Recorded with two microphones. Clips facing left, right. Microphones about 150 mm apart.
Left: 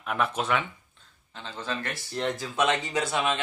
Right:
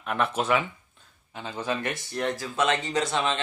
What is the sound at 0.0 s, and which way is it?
Speech, centre (ahead or behind).